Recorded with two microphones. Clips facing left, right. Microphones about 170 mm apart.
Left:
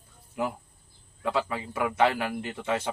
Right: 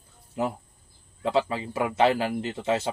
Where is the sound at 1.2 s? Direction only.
25° right (ahead or behind).